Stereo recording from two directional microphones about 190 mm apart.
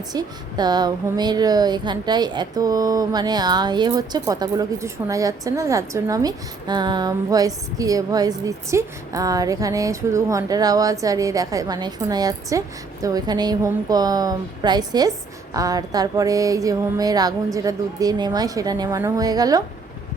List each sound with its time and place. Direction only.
0.1 s speech: 20° right (ahead or behind)